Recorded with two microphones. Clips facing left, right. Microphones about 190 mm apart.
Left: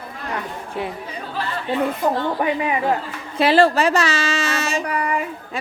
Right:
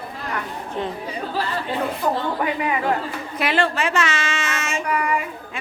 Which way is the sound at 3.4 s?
35° left (ahead or behind).